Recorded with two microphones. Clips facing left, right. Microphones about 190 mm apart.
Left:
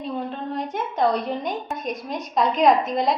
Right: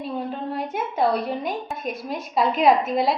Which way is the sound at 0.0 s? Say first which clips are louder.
Even; 5° right (ahead or behind).